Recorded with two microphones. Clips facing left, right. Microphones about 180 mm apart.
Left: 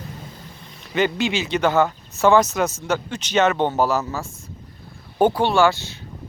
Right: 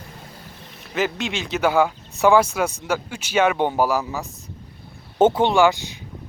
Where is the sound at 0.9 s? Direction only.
Centre (ahead or behind).